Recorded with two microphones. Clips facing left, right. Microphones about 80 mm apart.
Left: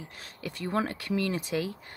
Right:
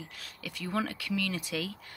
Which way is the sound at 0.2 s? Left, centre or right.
Left.